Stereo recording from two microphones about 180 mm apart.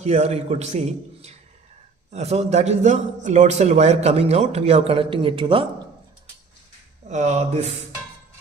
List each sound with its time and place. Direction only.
0.0 s a man's voice: 40° right (ahead or behind)
7.1 s a man's voice: 40° right (ahead or behind)